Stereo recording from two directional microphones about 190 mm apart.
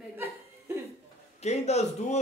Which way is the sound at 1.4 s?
35° left (ahead or behind).